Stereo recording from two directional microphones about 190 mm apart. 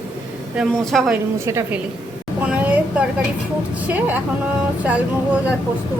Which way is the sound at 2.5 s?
5° right (ahead or behind).